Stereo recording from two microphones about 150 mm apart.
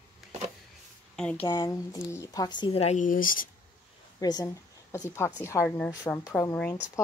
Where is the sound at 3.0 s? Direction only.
65° left (ahead or behind).